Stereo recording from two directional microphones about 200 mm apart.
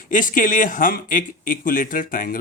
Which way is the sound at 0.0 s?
40° left (ahead or behind).